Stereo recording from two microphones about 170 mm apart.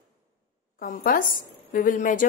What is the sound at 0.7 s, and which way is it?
A woman's voice, 55° left (ahead or behind).